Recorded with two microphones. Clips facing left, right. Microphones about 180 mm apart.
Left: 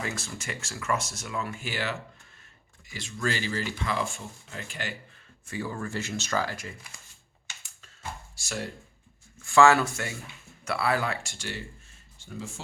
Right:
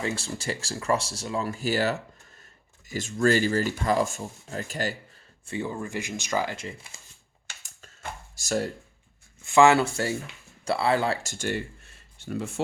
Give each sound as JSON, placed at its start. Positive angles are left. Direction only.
{"t": 0.0, "sound": "speech", "side_deg": -30}
{"t": 5.5, "sound": "speech", "side_deg": -25}
{"t": 8.4, "sound": "speech", "side_deg": -40}
{"t": 9.4, "sound": "speech", "side_deg": -20}
{"t": 11.2, "sound": "speech", "side_deg": -45}
{"t": 11.9, "sound": "a sound", "side_deg": -65}